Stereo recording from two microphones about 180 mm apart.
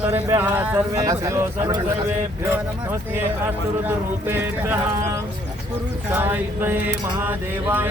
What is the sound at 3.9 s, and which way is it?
Mantra, 10° right (ahead or behind).